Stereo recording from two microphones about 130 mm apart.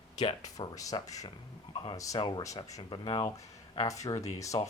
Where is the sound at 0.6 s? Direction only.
30° left (ahead or behind).